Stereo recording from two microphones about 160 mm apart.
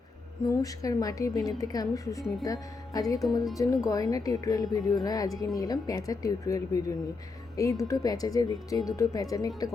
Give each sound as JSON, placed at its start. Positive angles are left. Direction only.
{"t": 0.4, "sound": "a woman's voice", "side_deg": 20}